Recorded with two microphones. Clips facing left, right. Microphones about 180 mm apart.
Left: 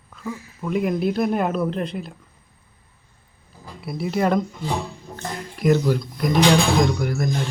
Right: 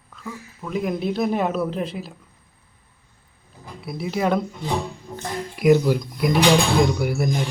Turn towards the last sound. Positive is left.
turn(degrees=-10)  # may be behind; listen again after turning